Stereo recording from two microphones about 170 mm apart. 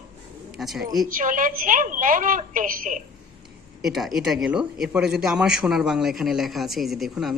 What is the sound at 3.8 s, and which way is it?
Speech, centre (ahead or behind).